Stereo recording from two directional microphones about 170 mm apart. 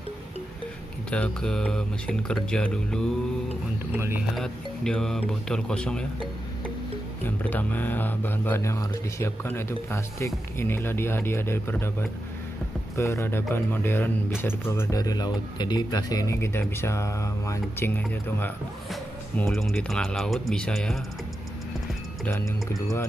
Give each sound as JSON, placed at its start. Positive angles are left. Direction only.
{"t": 1.1, "sound": "speech", "side_deg": 5}
{"t": 3.9, "sound": "speech", "side_deg": -10}
{"t": 4.4, "sound": "speech", "side_deg": 5}
{"t": 7.2, "sound": "speech", "side_deg": 10}
{"t": 22.2, "sound": "speech", "side_deg": 15}